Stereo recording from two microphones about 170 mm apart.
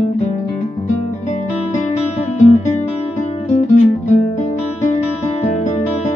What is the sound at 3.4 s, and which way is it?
Music, 45° left (ahead or behind).